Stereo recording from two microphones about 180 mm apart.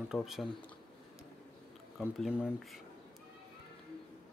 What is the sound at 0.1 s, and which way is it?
Speech, centre (ahead or behind).